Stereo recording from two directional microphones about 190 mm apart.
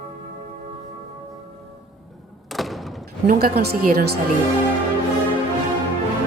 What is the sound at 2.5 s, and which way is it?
Thump, centre (ahead or behind).